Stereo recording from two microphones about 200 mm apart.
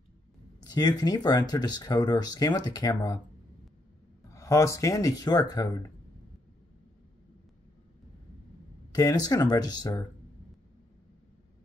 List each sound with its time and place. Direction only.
0.7 s speech: 20° left (ahead or behind)
4.3 s speech: 15° left (ahead or behind)
8.9 s speech: 20° left (ahead or behind)